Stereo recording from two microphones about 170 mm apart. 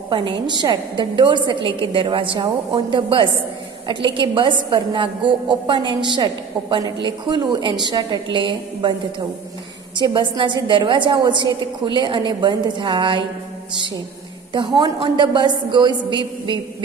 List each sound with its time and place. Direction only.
0.1 s a woman's voice: 30° right (ahead or behind)
9.9 s a woman's voice: 25° right (ahead or behind)
14.8 s a woman's voice: 30° right (ahead or behind)